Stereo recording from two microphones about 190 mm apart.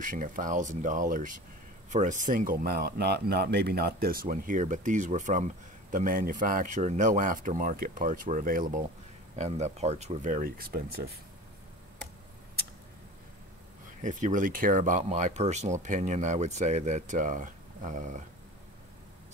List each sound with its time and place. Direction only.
0.0 s speech: 45° right (ahead or behind)
14.0 s speech: 40° right (ahead or behind)